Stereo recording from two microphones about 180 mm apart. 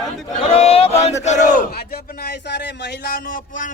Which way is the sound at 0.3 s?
35° left (ahead or behind).